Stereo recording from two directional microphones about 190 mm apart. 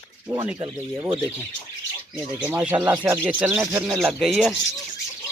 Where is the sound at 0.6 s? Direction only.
15° right (ahead or behind).